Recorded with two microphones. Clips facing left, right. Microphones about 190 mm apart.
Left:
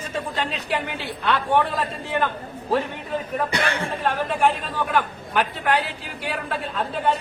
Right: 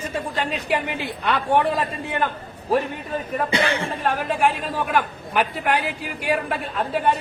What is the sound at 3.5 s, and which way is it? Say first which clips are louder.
Speech: right 5 dB; 25° right (ahead or behind).